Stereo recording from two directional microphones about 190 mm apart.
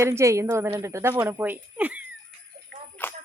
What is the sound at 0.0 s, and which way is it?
Speech, 15° right (ahead or behind).